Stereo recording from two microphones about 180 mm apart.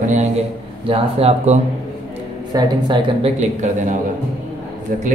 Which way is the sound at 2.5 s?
20° right (ahead or behind).